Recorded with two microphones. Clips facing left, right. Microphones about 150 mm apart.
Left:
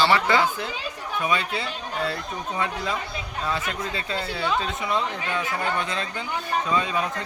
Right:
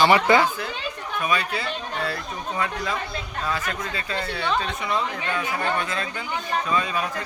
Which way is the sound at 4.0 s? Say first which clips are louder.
Even; 25° left (ahead or behind).